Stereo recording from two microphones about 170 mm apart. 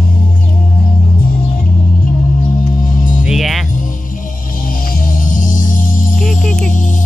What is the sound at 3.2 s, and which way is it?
Music, centre (ahead or behind).